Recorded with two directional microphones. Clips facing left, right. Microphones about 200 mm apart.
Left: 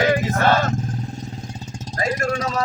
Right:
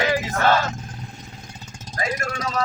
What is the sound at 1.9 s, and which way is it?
Vehicle, 35° left (ahead or behind).